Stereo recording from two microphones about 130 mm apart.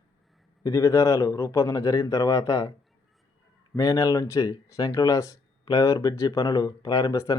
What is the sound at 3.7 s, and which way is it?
Speech, 25° left (ahead or behind).